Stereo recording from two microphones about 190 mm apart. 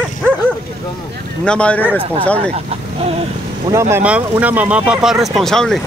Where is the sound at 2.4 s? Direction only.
30° right (ahead or behind).